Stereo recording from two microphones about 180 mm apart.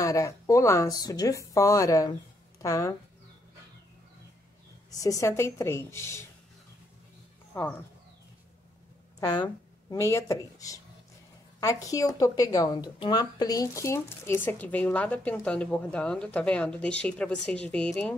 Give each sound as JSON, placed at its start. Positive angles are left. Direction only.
{"t": 0.0, "sound": "speech", "side_deg": 20}
{"t": 5.0, "sound": "speech", "side_deg": 20}
{"t": 7.5, "sound": "speech", "side_deg": 10}
{"t": 9.2, "sound": "speech", "side_deg": 25}